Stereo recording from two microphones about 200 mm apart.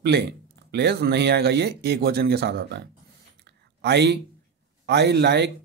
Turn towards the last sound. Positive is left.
turn(degrees=-60)  # may be behind; listen again after turning